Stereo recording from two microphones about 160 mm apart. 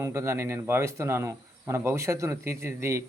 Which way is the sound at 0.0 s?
15° right (ahead or behind).